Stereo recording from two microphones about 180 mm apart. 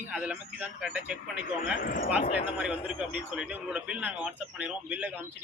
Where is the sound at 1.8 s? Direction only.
50° left (ahead or behind).